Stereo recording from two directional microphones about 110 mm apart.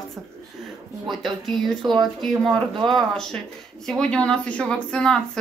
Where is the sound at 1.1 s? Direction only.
Centre (ahead or behind).